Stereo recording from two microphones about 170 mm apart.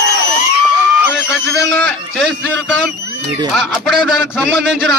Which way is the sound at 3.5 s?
Centre (ahead or behind).